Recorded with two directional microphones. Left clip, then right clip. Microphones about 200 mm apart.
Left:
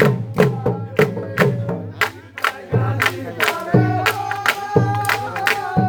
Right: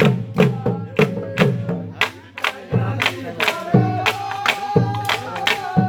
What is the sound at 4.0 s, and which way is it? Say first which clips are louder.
Music: left 1 dB; 30° right (ahead or behind).